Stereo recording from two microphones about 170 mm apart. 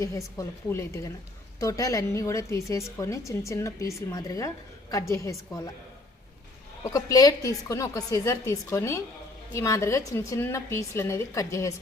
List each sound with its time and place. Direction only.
0.3 s a woman's voice: 15° left (ahead or behind)
6.8 s a woman's voice: 20° left (ahead or behind)